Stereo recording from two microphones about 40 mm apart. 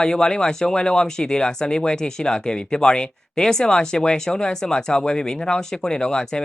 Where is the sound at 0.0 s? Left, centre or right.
Centre.